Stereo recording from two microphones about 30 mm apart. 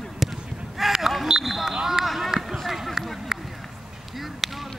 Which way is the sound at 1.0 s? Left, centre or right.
Centre.